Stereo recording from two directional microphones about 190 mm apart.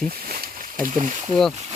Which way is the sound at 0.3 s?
45° right (ahead or behind).